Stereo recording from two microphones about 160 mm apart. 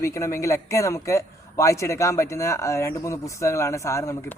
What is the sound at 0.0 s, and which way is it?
A man's voice, 15° left (ahead or behind).